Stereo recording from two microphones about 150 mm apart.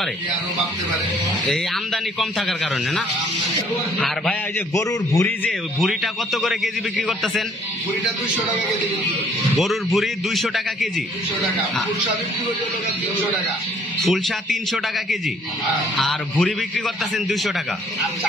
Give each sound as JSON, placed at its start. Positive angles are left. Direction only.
{"t": 2.1, "sound": "a man's voice", "side_deg": 5}
{"t": 4.7, "sound": "a man's voice", "side_deg": 20}
{"t": 5.8, "sound": "a man's voice", "side_deg": 0}
{"t": 9.6, "sound": "a man's voice", "side_deg": 0}
{"t": 14.0, "sound": "a man's voice", "side_deg": 0}